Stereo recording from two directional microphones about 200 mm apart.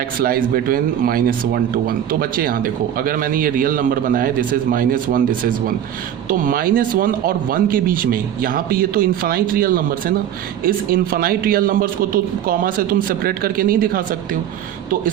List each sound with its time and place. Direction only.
0.2 s speech: 45° right (ahead or behind)